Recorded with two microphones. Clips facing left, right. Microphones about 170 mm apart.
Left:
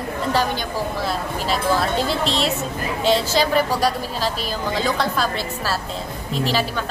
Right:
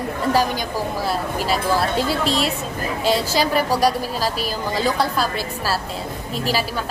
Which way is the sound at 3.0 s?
10° right (ahead or behind).